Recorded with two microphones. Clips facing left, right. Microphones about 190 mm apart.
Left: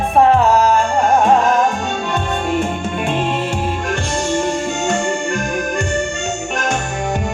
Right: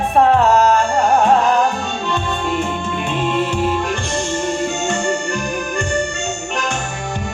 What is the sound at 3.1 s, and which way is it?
Music, 50° left (ahead or behind).